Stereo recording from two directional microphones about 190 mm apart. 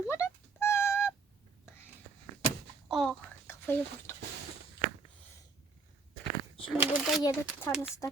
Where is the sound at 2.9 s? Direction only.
Centre (ahead or behind).